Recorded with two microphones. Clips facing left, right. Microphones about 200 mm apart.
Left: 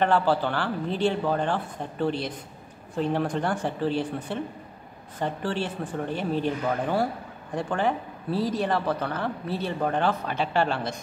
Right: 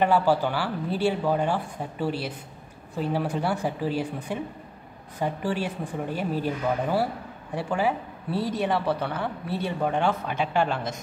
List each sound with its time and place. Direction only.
0.0 s speech: 10° right (ahead or behind)
8.3 s a man's voice: 60° right (ahead or behind)
8.7 s speech: 5° right (ahead or behind)